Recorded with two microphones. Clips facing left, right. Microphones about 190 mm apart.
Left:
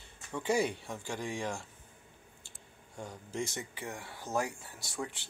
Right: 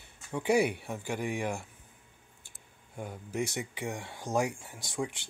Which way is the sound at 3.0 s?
10° right (ahead or behind).